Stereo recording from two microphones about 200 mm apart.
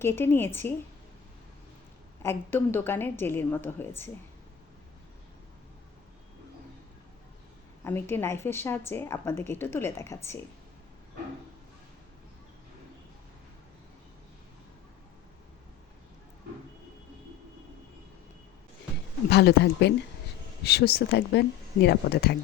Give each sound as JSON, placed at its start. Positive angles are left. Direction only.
{"t": 0.0, "sound": "a woman's voice", "side_deg": 10}
{"t": 2.2, "sound": "a woman's voice", "side_deg": 10}
{"t": 7.9, "sound": "a woman's voice", "side_deg": 10}
{"t": 19.3, "sound": "speech", "side_deg": 55}